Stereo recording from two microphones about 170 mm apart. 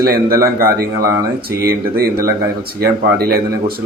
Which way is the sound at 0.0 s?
60° right (ahead or behind).